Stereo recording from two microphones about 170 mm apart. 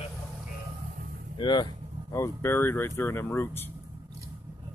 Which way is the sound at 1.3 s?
25° left (ahead or behind).